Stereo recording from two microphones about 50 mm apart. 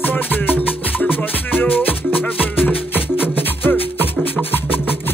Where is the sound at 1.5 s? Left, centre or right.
Left.